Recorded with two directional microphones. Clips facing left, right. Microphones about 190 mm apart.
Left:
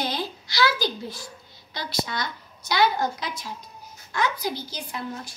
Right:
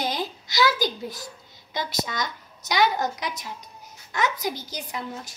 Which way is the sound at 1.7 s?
20° right (ahead or behind).